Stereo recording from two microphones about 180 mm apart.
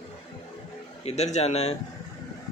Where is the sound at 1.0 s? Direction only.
35° left (ahead or behind).